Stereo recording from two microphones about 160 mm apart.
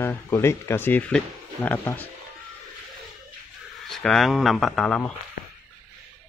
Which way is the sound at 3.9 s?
5° left (ahead or behind).